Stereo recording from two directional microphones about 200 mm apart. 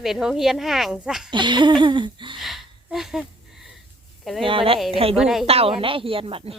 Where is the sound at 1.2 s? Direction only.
25° right (ahead or behind).